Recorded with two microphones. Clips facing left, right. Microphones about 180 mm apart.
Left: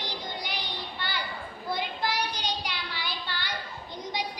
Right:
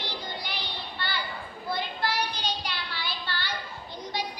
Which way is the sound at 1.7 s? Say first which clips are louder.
Even; 15° left (ahead or behind).